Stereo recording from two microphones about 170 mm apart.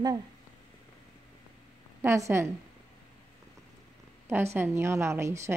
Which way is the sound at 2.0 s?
15° right (ahead or behind).